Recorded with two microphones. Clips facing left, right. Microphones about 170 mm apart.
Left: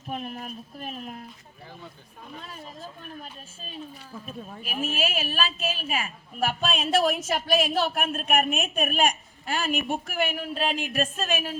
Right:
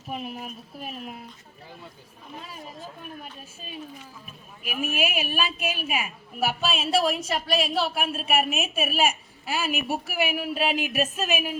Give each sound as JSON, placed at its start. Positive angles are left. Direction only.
{"t": 0.1, "sound": "speech", "side_deg": -5}
{"t": 4.9, "sound": "a woman's voice", "side_deg": -10}